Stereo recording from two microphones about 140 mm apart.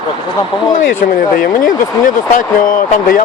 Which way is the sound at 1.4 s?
75° left (ahead or behind).